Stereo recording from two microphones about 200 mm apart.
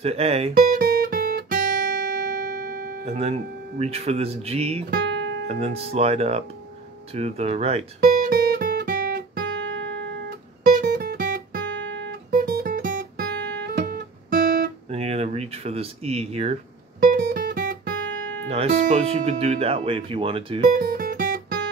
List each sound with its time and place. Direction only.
0.0 s speech: 30° right (ahead or behind)
0.6 s guitar: 50° right (ahead or behind)
3.1 s speech: 30° right (ahead or behind)
5.0 s music: 70° right (ahead or behind)
5.5 s speech: 30° right (ahead or behind)
8.0 s guitar: 50° right (ahead or behind)
10.8 s music: 50° right (ahead or behind); by 12.1 s 65° right (ahead or behind)
12.3 s guitar: 45° right (ahead or behind)
14.9 s a sound: 30° right (ahead or behind)
17.0 s music: 45° right (ahead or behind)
18.5 s speech: 30° right (ahead or behind)
20.7 s guitar: 45° right (ahead or behind)